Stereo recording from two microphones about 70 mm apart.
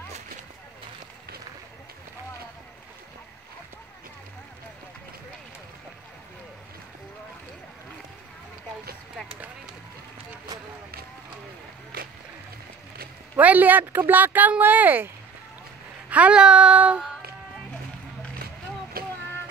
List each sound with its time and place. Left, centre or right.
13.4 s speech: right
16.1 s speech: centre